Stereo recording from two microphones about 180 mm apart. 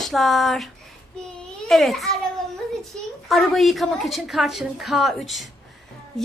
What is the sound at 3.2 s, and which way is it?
A woman's voice, centre (ahead or behind).